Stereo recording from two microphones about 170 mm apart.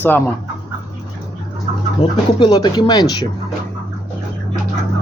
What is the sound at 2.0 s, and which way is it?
Speech, 25° left (ahead or behind).